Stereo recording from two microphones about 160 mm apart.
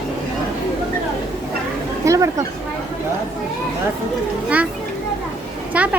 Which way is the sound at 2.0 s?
20° right (ahead or behind).